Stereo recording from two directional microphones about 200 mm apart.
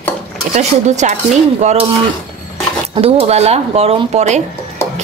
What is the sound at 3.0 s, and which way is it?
Speech, 30° right (ahead or behind).